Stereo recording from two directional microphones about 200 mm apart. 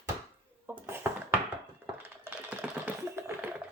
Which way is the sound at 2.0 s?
10° right (ahead or behind).